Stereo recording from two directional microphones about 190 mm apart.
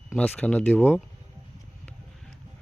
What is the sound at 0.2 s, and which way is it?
Speech, 5° left (ahead or behind).